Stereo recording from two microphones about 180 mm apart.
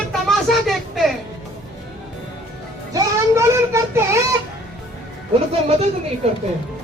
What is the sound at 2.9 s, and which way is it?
Child singing, 15° right (ahead or behind).